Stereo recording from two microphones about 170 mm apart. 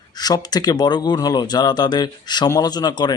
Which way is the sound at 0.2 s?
25° left (ahead or behind).